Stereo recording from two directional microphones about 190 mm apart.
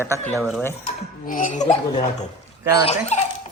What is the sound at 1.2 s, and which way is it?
Speech, 40° left (ahead or behind).